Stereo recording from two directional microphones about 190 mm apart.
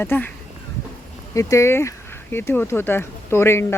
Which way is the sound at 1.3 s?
15° left (ahead or behind).